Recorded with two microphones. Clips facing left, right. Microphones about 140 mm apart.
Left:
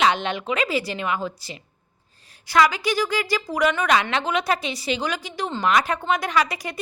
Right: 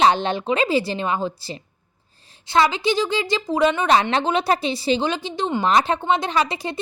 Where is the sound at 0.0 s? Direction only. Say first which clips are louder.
Right 4 dB; 35° right (ahead or behind).